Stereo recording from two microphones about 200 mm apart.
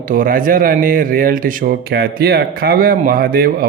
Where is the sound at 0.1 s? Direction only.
40° right (ahead or behind).